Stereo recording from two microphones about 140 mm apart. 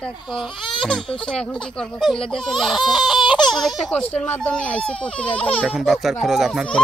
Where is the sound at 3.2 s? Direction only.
35° left (ahead or behind).